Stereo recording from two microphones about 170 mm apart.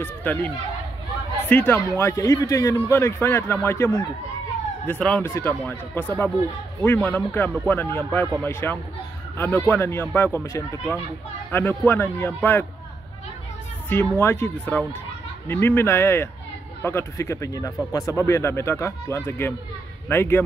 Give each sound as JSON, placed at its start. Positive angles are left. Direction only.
{"t": 0.0, "sound": "speech", "side_deg": 10}
{"t": 1.5, "sound": "a man's voice", "side_deg": 10}
{"t": 13.8, "sound": "a man's voice", "side_deg": 10}